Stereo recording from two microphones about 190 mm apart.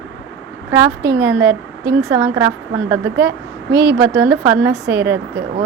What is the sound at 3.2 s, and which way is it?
Speech, 60° right (ahead or behind).